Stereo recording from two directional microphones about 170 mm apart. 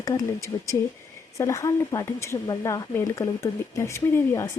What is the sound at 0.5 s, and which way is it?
Speech, 20° left (ahead or behind).